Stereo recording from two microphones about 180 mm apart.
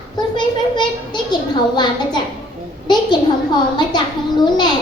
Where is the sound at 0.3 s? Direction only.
25° left (ahead or behind).